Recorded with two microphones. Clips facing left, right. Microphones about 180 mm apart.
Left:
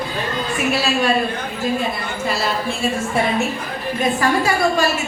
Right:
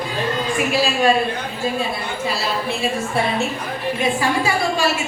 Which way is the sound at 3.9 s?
40° left (ahead or behind).